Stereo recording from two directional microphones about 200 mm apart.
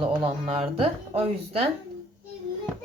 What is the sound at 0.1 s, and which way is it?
Speech, 25° right (ahead or behind).